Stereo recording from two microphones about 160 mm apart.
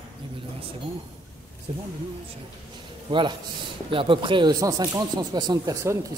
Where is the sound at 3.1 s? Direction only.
35° right (ahead or behind).